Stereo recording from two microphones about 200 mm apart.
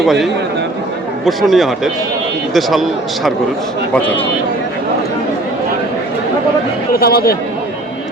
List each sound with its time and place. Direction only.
0.0 s speech: centre (ahead or behind)
6.9 s speech: 50° left (ahead or behind)